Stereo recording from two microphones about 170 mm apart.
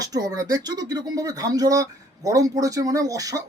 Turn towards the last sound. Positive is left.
turn(degrees=-20)  # may be behind; listen again after turning